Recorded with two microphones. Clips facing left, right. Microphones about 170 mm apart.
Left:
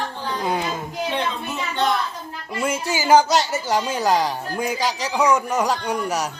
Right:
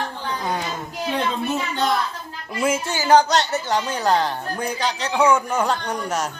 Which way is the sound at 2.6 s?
5° right (ahead or behind).